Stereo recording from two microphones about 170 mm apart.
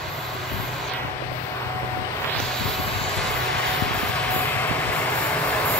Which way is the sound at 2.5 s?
5° left (ahead or behind).